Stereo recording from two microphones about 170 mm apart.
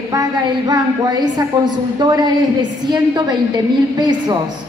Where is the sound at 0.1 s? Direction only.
25° right (ahead or behind).